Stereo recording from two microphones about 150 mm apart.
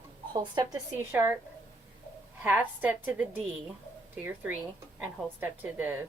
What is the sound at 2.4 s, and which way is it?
Speech, 10° right (ahead or behind).